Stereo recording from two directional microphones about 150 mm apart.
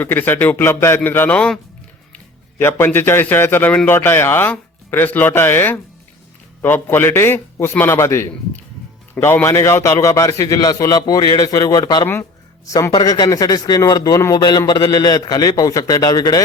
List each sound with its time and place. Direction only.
0.0 s a man's voice: 15° left (ahead or behind)